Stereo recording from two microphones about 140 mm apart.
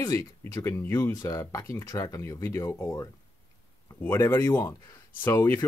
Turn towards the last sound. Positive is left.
turn(degrees=15)  # may be behind; listen again after turning